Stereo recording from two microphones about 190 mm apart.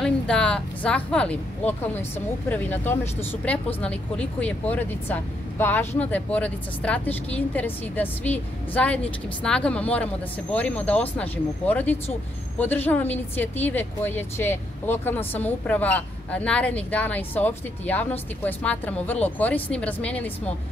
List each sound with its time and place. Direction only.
0.0 s speech: 5° left (ahead or behind)